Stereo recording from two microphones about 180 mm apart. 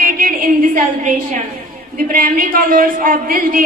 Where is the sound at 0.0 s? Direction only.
50° right (ahead or behind).